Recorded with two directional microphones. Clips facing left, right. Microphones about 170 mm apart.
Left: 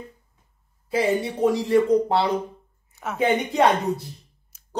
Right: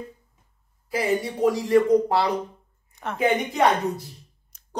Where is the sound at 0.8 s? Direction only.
25° left (ahead or behind).